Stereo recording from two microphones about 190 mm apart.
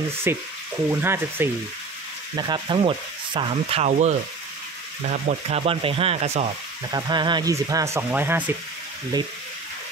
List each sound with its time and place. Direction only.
0.3 s frying: 10° right (ahead or behind)
2.3 s sizzle: 25° right (ahead or behind)
5.2 s speech: 30° right (ahead or behind)
6.9 s sizzle: 20° right (ahead or behind)